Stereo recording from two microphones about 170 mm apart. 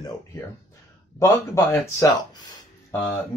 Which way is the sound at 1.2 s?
15° left (ahead or behind).